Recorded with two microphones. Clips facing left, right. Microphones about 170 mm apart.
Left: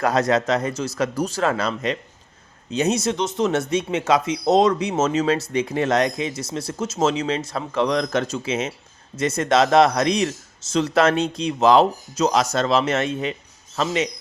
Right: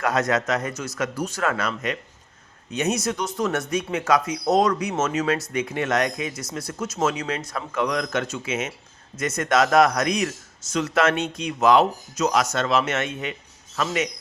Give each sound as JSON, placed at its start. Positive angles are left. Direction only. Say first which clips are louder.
{"t": 0.0, "sound": "speech", "louder": "left 3 dB", "side_deg": 35}